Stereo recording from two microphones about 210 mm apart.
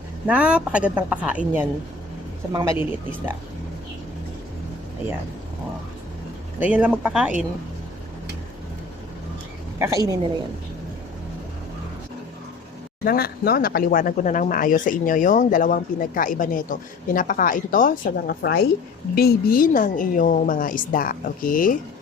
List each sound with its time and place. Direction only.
0.3 s speech: 5° right (ahead or behind)
2.5 s speech: 15° right (ahead or behind)
6.6 s speech: 5° right (ahead or behind)
9.7 s speech: 15° right (ahead or behind)
13.1 s speech: 45° left (ahead or behind)